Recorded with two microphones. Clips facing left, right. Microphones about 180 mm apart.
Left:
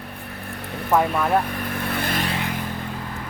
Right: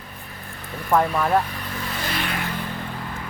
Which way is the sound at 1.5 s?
55° left (ahead or behind).